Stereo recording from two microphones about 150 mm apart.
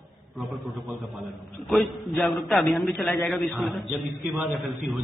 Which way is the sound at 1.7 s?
Centre (ahead or behind).